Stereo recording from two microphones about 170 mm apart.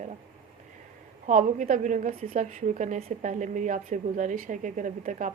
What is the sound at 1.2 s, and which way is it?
A woman's voice, 50° right (ahead or behind).